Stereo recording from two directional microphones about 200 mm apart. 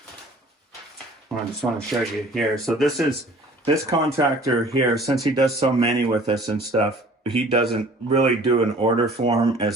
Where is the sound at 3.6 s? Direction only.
20° right (ahead or behind).